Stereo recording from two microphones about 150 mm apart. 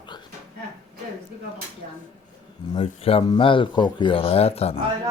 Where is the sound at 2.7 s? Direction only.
40° left (ahead or behind).